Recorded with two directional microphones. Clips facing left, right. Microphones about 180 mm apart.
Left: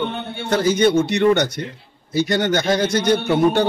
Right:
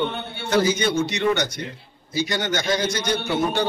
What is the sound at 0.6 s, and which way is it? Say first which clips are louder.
A man's voice: left 7 dB; 55° left (ahead or behind).